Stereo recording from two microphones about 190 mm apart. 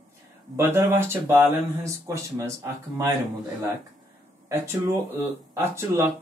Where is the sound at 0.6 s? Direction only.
10° right (ahead or behind).